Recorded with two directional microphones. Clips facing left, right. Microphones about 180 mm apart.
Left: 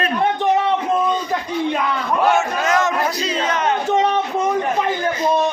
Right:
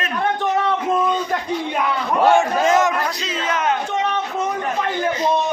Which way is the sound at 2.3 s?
30° right (ahead or behind).